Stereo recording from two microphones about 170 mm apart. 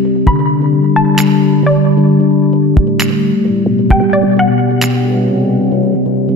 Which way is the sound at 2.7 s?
Centre (ahead or behind).